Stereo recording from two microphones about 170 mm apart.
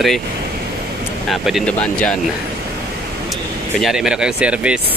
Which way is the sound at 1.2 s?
Centre (ahead or behind).